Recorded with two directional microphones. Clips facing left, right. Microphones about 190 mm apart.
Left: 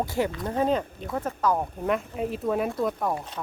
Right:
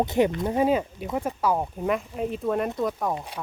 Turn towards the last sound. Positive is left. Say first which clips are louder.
# even
turn(degrees=0)  # may be behind; listen again after turning